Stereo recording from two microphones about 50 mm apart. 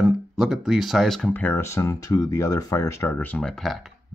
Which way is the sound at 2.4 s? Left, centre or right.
Left.